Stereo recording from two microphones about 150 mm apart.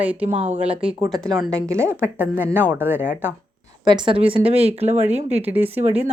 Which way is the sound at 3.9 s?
30° right (ahead or behind).